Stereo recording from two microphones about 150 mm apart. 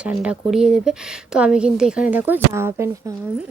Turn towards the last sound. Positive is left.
turn(degrees=-20)  # may be behind; listen again after turning